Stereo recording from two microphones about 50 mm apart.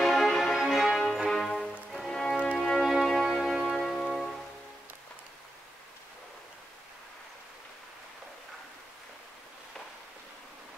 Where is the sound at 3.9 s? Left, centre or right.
Centre.